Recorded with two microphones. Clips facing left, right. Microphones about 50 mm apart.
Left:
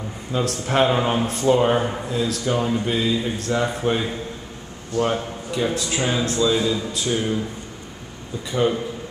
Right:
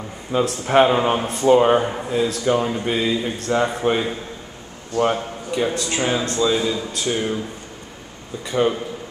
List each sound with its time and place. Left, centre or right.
0.3 s speech: right
1.2 s speech: right
1.8 s speech: centre
2.0 s speech: right
2.4 s speech: centre
8.5 s speech: centre